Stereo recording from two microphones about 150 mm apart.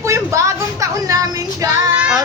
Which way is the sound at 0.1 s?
20° right (ahead or behind).